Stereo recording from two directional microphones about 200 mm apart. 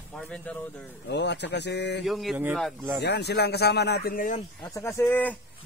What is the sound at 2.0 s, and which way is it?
Speech, centre (ahead or behind).